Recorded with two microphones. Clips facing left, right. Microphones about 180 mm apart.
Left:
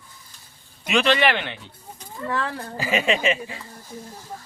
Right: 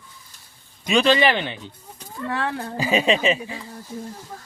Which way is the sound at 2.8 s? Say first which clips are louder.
Right 3 dB; 20° right (ahead or behind).